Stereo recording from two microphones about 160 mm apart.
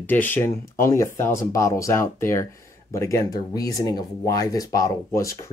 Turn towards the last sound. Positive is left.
turn(degrees=20)  # may be behind; listen again after turning